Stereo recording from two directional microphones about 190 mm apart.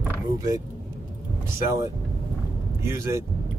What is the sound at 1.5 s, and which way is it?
Speech, 15° right (ahead or behind).